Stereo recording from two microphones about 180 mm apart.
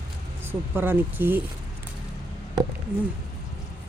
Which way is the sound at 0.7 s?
10° right (ahead or behind).